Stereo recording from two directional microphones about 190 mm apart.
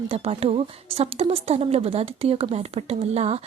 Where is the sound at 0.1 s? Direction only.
30° right (ahead or behind).